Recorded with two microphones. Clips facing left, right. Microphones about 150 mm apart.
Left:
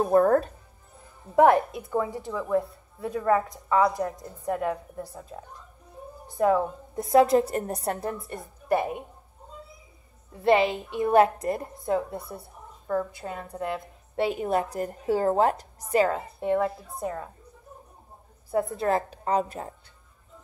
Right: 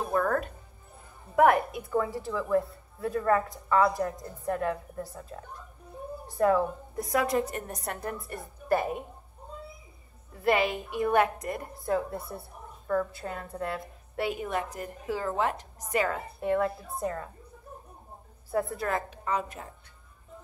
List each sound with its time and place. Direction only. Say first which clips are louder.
0.0 s music: left 8 dB; 35° left (ahead or behind)
1.3 s a woman's voice: left 3 dB; 25° left (ahead or behind)
7.0 s a woman's voice: left 8 dB; 30° left (ahead or behind)
10.4 s a woman's voice: left 4 dB; 25° left (ahead or behind)
18.5 s a woman's voice: left 4 dB; 25° left (ahead or behind)